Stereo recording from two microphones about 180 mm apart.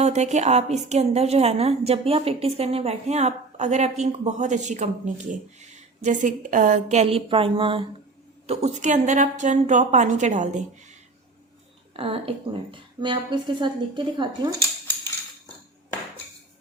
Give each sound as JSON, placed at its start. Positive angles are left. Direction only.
{"t": 0.0, "sound": "a woman's voice", "side_deg": -40}
{"t": 8.4, "sound": "a woman's voice", "side_deg": -40}
{"t": 11.9, "sound": "a woman's voice", "side_deg": -30}